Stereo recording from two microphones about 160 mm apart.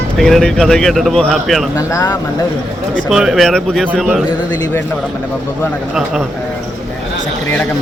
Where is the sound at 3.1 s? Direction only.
Centre (ahead or behind).